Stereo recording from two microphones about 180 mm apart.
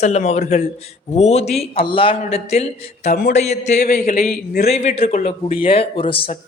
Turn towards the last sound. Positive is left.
turn(degrees=30)  # may be behind; listen again after turning